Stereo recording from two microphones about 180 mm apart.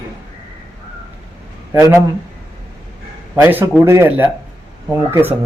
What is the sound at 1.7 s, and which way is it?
Speech, 15° right (ahead or behind).